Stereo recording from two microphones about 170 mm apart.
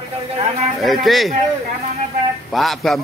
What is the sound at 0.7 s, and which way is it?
Speech, centre (ahead or behind).